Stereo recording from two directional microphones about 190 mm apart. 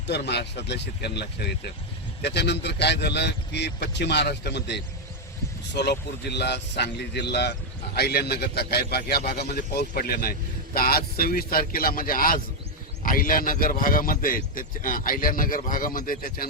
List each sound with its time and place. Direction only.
0.1 s a man's voice: 60° left (ahead or behind)